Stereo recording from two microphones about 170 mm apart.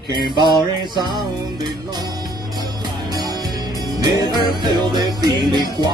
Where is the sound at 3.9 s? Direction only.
25° right (ahead or behind).